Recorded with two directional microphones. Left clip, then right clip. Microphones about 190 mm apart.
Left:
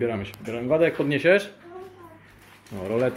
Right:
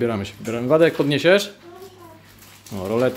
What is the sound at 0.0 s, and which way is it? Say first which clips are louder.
Speech: right 4 dB; 30° right (ahead or behind).